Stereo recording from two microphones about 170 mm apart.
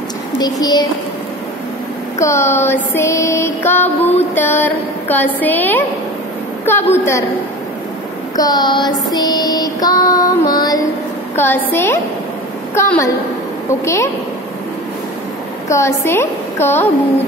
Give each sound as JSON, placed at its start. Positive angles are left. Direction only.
{"t": 0.4, "sound": "speech", "side_deg": 25}
{"t": 2.1, "sound": "music", "side_deg": 15}
{"t": 8.4, "sound": "child singing", "side_deg": 20}
{"t": 11.3, "sound": "music", "side_deg": 10}
{"t": 12.7, "sound": "a woman's voice", "side_deg": 15}
{"t": 13.7, "sound": "music", "side_deg": 15}
{"t": 15.7, "sound": "music", "side_deg": 15}